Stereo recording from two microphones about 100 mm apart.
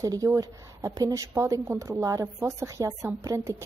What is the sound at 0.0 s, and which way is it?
A woman's voice, 35° right (ahead or behind).